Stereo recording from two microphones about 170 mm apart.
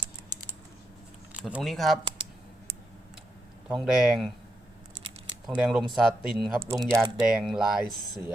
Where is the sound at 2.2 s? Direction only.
30° right (ahead or behind).